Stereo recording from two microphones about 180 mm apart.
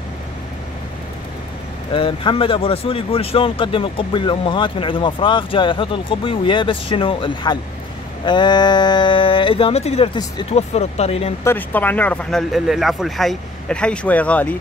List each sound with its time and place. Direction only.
2.0 s speech: 30° left (ahead or behind)
11.4 s speech: 10° left (ahead or behind)